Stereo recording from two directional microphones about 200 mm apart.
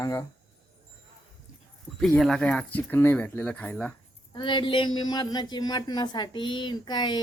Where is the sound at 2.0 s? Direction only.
Centre (ahead or behind).